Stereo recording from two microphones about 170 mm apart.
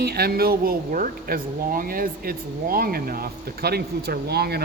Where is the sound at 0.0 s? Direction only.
65° right (ahead or behind).